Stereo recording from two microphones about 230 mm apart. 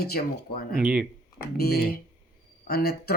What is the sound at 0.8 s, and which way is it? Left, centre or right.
Speech, centre.